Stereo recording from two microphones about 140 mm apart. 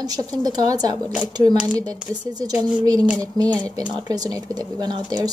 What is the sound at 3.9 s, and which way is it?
Speech, 30° right (ahead or behind).